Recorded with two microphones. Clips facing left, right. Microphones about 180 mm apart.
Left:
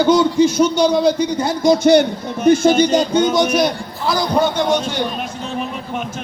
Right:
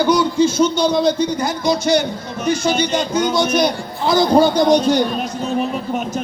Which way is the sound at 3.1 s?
20° left (ahead or behind).